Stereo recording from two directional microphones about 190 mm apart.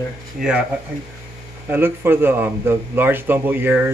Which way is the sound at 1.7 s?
10° right (ahead or behind).